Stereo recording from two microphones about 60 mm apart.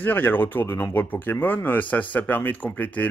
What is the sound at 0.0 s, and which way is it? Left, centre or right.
Speech, left.